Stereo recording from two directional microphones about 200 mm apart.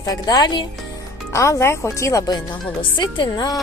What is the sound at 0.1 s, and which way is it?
A woman's voice, 20° left (ahead or behind).